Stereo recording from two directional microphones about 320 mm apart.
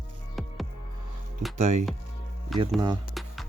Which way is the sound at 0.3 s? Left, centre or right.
Centre.